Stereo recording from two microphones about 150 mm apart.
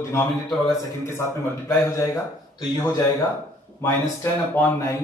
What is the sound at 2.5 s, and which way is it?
Speech, 30° left (ahead or behind).